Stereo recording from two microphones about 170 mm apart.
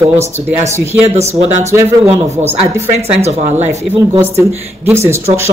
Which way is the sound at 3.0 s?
40° right (ahead or behind).